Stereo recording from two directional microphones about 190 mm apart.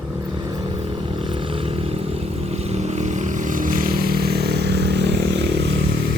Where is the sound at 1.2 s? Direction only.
25° right (ahead or behind); by 5.4 s 65° right (ahead or behind).